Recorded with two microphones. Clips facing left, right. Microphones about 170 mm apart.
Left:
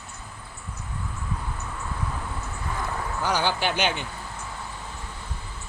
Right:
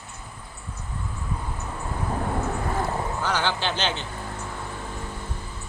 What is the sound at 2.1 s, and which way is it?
Vehicle, 55° right (ahead or behind).